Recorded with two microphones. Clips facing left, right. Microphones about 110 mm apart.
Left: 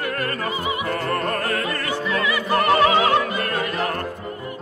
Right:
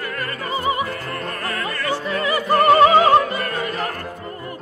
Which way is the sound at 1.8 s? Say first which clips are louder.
Right 3 dB; 40° right (ahead or behind).